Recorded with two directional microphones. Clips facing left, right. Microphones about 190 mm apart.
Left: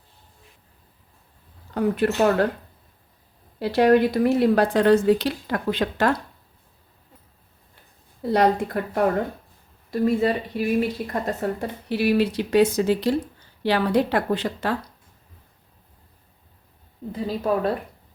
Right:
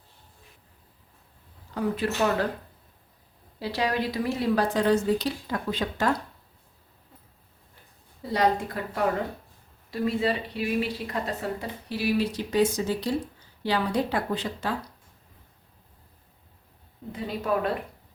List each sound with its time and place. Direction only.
1.7 s speech: 60° left (ahead or behind)
3.6 s speech: 55° left (ahead or behind)
8.2 s speech: 60° left (ahead or behind)
9.9 s speech: 45° left (ahead or behind); by 14.8 s 65° left (ahead or behind)
17.1 s speech: 30° left (ahead or behind)